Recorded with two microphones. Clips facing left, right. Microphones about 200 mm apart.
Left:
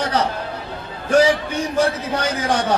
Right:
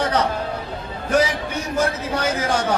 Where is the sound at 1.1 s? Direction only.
30° left (ahead or behind).